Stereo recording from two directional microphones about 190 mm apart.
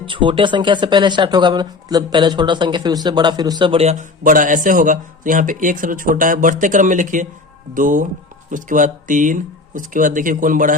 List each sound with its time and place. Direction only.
0.0 s speech: 25° right (ahead or behind); by 10.8 s 45° right (ahead or behind)